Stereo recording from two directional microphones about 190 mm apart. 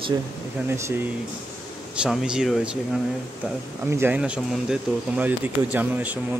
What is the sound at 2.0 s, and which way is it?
Speech, 5° right (ahead or behind).